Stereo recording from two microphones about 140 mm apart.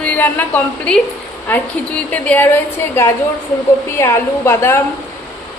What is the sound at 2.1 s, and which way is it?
A woman's voice, 10° left (ahead or behind).